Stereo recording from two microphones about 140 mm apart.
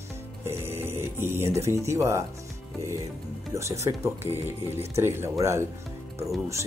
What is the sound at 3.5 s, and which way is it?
Speech, 20° right (ahead or behind).